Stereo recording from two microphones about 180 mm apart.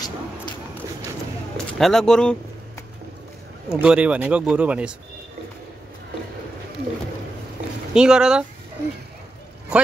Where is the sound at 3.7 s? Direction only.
5° right (ahead or behind).